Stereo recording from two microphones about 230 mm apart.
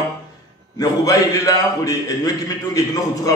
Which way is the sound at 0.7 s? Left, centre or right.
Centre.